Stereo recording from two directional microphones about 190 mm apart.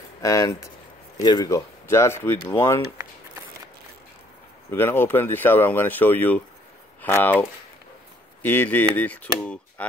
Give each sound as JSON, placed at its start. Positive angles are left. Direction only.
{"t": 0.2, "sound": "speech", "side_deg": 15}
{"t": 4.6, "sound": "speech", "side_deg": 10}